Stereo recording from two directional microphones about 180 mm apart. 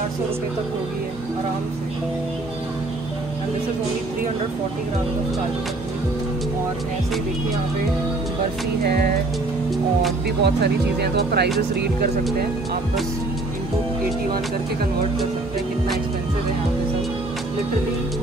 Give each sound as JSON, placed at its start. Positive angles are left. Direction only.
{"t": 8.8, "sound": "speech", "side_deg": -55}
{"t": 10.4, "sound": "speech", "side_deg": -65}